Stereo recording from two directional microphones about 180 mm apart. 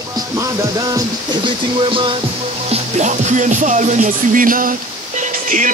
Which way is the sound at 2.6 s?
45° right (ahead or behind).